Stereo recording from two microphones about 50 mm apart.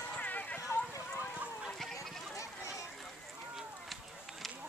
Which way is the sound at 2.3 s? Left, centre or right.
Left.